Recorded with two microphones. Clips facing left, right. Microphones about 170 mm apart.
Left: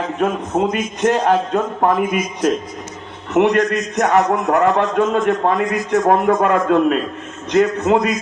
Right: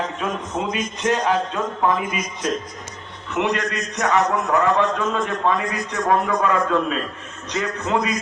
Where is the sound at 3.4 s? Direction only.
55° left (ahead or behind).